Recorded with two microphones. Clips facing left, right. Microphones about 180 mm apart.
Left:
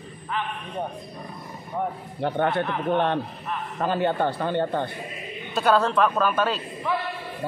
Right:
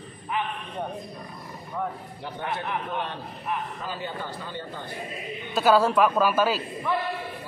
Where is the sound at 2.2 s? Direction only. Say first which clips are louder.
Left 9 dB; 60° left (ahead or behind).